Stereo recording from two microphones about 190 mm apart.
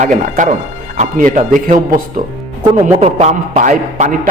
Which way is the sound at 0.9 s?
45° right (ahead or behind).